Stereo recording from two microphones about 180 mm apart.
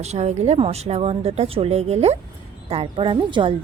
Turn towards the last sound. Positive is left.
turn(degrees=-25)  # may be behind; listen again after turning